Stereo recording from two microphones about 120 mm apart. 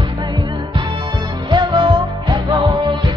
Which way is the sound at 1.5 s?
40° right (ahead or behind).